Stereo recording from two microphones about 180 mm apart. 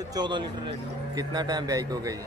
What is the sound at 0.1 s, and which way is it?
A man's voice, 25° right (ahead or behind).